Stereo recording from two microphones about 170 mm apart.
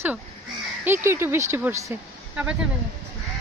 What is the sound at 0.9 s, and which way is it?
Speech, 15° right (ahead or behind).